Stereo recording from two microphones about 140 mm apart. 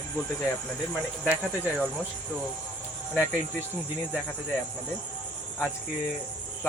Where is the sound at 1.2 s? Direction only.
15° left (ahead or behind).